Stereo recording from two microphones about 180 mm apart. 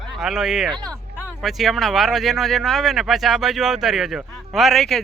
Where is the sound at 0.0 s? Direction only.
Centre (ahead or behind).